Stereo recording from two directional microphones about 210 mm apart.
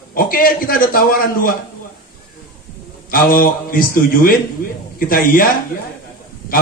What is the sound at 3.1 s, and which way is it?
A man's voice, 45° left (ahead or behind).